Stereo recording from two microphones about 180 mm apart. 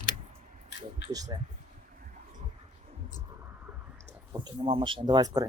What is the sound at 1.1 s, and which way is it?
Speech, 20° right (ahead or behind).